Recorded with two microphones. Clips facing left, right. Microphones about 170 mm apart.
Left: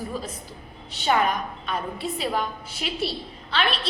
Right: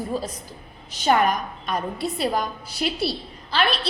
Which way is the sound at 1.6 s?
40° right (ahead or behind).